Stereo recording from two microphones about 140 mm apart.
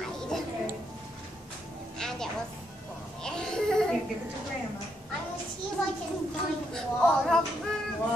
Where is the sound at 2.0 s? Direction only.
5° left (ahead or behind).